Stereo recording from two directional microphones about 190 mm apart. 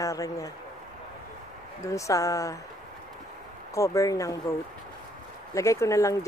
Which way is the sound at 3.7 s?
15° left (ahead or behind).